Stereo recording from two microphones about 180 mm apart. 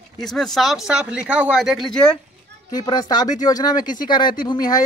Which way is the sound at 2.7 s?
20° left (ahead or behind).